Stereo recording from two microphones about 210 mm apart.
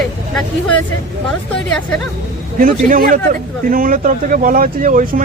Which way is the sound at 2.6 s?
40° right (ahead or behind).